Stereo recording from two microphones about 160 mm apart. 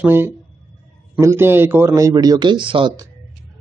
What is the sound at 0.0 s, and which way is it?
A man's voice, 15° right (ahead or behind).